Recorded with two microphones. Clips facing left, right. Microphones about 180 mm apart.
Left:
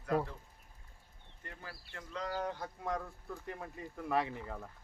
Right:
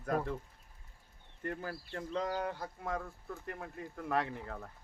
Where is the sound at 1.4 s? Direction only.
60° right (ahead or behind).